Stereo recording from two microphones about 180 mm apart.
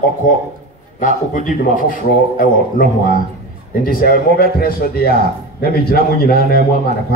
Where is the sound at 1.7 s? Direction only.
50° left (ahead or behind).